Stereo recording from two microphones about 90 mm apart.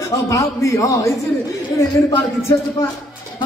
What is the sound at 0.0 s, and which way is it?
Speech, 35° left (ahead or behind).